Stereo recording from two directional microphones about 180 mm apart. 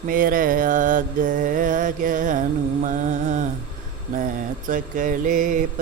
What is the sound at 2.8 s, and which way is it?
Music, 45° right (ahead or behind).